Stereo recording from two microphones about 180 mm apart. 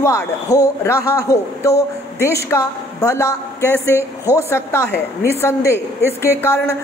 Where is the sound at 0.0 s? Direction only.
20° left (ahead or behind).